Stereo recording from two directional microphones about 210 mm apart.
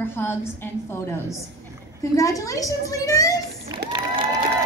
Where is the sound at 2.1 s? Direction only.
15° left (ahead or behind).